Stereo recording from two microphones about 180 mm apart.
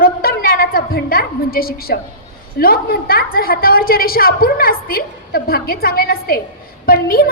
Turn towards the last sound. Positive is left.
turn(degrees=55)  # may be behind; listen again after turning